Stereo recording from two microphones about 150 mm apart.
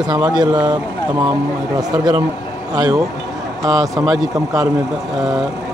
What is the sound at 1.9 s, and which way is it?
Speech, 25° right (ahead or behind).